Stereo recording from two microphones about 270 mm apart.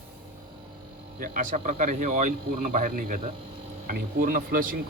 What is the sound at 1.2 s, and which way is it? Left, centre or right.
Speech, right.